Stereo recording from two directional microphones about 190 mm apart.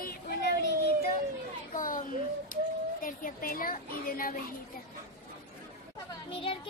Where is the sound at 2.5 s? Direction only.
45° left (ahead or behind).